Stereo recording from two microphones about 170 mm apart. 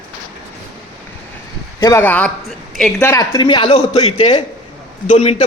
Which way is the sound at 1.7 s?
15° left (ahead or behind).